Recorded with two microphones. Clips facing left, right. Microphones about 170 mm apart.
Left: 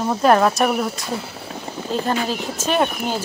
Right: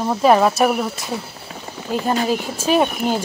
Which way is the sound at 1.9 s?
10° right (ahead or behind).